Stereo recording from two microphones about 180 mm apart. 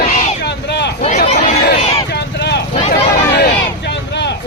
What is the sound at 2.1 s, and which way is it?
Vehicle, 70° left (ahead or behind).